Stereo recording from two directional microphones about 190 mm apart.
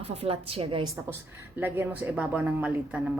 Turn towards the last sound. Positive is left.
turn(degrees=-5)  # may be behind; listen again after turning